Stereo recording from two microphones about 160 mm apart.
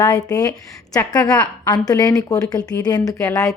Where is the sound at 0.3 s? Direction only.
25° left (ahead or behind).